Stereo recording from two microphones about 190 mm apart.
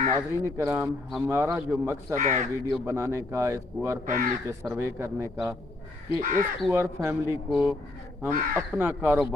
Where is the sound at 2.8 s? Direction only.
15° right (ahead or behind).